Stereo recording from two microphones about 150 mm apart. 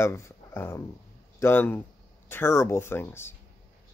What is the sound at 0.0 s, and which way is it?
Speech, 20° left (ahead or behind).